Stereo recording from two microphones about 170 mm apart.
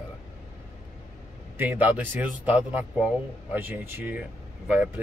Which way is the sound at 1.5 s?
10° right (ahead or behind).